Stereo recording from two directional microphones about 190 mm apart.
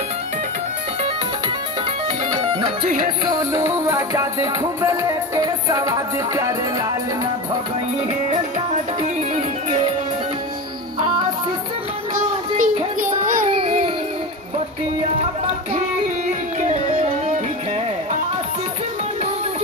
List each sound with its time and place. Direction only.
3.3 s music: 15° right (ahead or behind)
12.1 s child singing: 40° right (ahead or behind)
13.5 s music: 30° right (ahead or behind)
16.5 s music: 35° right (ahead or behind)